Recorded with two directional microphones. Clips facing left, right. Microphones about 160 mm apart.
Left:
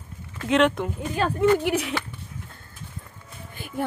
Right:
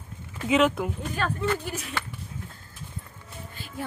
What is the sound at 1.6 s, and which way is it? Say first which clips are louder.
Speech: left 10 dB; 75° left (ahead or behind).